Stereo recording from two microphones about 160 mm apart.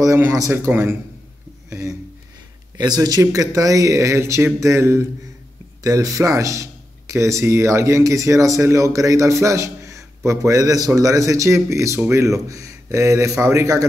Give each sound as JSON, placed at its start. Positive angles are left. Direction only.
{"t": 0.0, "sound": "a man's voice", "side_deg": -20}